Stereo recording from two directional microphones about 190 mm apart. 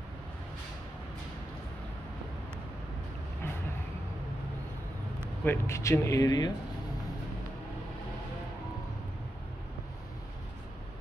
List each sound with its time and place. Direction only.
5.4 s speech: 10° left (ahead or behind)